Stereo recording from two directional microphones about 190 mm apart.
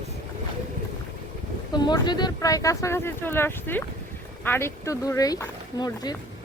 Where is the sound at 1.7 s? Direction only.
20° left (ahead or behind).